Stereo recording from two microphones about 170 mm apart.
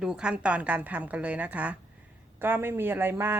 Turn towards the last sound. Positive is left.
turn(degrees=-15)  # may be behind; listen again after turning